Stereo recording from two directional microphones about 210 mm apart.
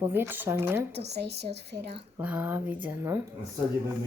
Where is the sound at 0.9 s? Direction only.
50° right (ahead or behind).